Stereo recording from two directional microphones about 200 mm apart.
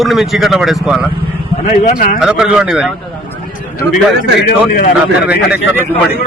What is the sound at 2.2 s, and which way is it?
Speech, 5° right (ahead or behind).